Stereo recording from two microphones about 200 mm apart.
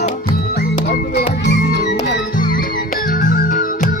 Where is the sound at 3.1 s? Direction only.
45° left (ahead or behind).